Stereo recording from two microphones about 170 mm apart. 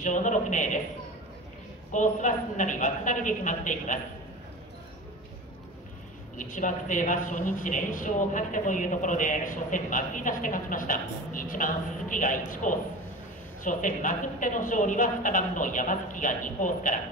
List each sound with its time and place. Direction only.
0.0 s a woman's voice: 45° left (ahead or behind)
1.9 s a woman's voice: 45° left (ahead or behind)
6.3 s a woman's voice: 50° left (ahead or behind)